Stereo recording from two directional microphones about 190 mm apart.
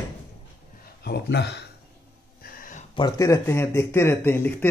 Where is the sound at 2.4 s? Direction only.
50° left (ahead or behind).